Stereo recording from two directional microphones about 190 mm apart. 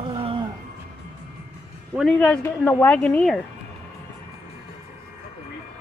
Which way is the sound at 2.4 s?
10° left (ahead or behind).